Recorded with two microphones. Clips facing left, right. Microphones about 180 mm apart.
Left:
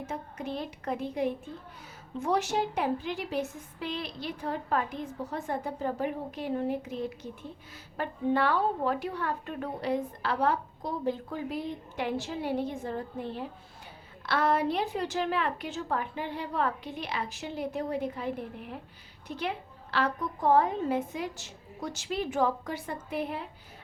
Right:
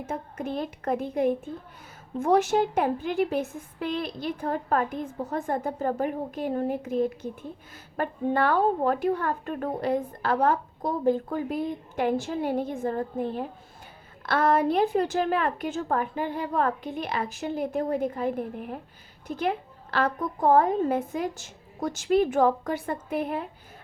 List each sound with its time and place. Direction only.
0.1 s a woman's voice: 50° right (ahead or behind)